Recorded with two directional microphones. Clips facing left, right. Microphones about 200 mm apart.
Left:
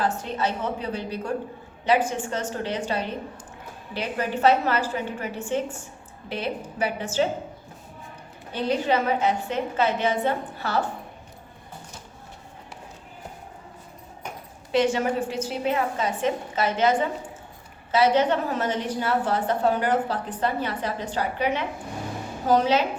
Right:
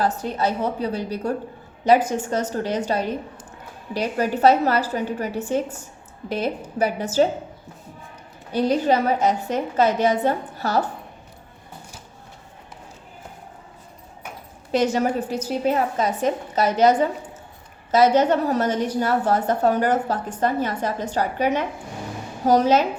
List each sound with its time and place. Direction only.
0.0 s a woman's voice: 40° right (ahead or behind)
8.5 s a woman's voice: 40° right (ahead or behind)
14.7 s a woman's voice: 40° right (ahead or behind)